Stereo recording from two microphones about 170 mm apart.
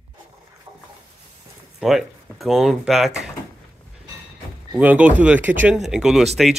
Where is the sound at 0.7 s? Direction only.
20° right (ahead or behind).